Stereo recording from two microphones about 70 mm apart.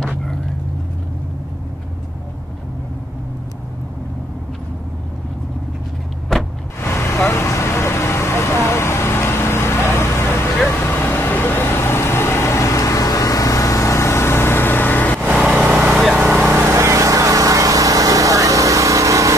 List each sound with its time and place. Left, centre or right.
0.0 s vehicle: centre
6.3 s vehicle: centre
6.8 s vehicle: left
15.2 s vehicle: centre
16.4 s vehicle: right
16.7 s vehicle: right